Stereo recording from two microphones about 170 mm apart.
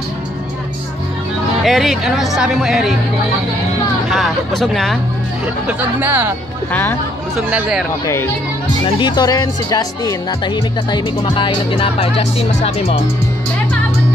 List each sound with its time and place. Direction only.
1.6 s speech: centre (ahead or behind)
4.1 s speech: centre (ahead or behind)
5.7 s speech: 10° right (ahead or behind)
6.7 s speech: 10° left (ahead or behind)
7.3 s speech: 5° right (ahead or behind)
8.8 s speech: 25° left (ahead or behind)